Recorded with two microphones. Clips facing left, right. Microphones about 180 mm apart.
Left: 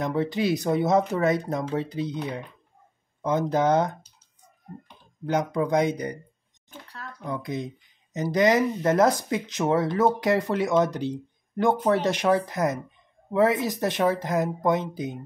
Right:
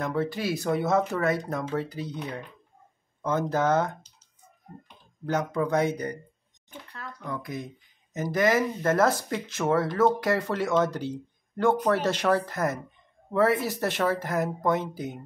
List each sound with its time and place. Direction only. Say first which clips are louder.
0.0 s speech: left 3 dB; 20° left (ahead or behind)
5.2 s speech: left 2 dB; 15° left (ahead or behind)
7.2 s speech: left 4 dB; 20° left (ahead or behind)